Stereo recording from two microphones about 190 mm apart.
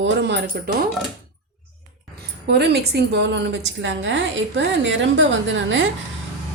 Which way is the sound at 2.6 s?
60° right (ahead or behind).